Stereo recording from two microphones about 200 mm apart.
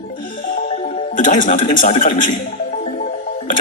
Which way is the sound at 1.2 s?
40° left (ahead or behind).